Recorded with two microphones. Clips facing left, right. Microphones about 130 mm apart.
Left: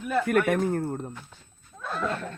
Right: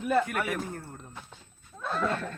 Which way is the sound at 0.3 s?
50° left (ahead or behind).